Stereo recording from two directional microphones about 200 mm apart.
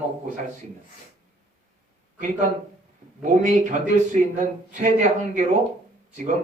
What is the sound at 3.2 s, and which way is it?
Speech, 40° right (ahead or behind).